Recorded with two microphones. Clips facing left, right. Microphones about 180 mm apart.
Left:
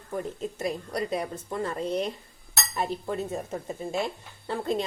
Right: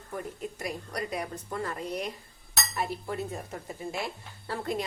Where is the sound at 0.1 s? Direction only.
25° left (ahead or behind).